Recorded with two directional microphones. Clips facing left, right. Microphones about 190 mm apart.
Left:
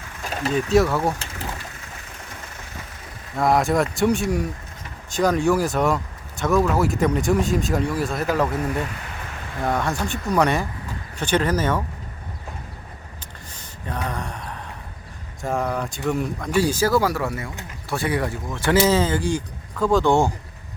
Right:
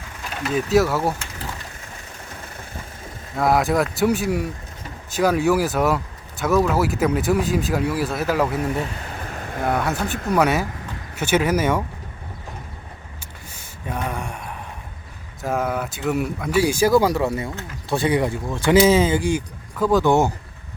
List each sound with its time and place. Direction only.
0.5 s speech: centre (ahead or behind)
3.3 s speech: centre (ahead or behind)
13.5 s a sound: 10° right (ahead or behind)
15.4 s speech: centre (ahead or behind)